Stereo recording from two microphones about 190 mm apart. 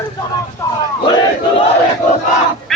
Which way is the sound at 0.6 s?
15° left (ahead or behind).